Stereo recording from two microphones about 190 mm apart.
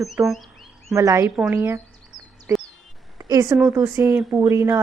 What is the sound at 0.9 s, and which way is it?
Speech, 15° right (ahead or behind).